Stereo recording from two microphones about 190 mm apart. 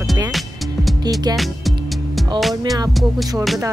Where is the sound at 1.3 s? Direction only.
Centre (ahead or behind).